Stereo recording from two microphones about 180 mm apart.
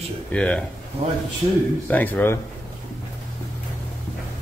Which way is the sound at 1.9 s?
10° left (ahead or behind).